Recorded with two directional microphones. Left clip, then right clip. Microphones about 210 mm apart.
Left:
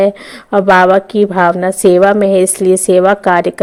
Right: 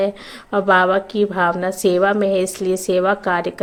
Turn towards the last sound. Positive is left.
turn(degrees=40)  # may be behind; listen again after turning